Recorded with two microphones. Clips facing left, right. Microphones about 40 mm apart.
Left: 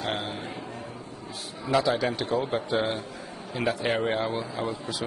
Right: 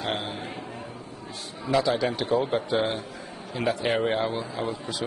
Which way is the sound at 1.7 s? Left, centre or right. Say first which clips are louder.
Right 1 dB; centre.